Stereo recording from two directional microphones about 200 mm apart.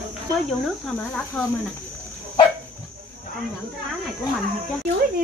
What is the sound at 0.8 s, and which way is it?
Speech, 5° left (ahead or behind).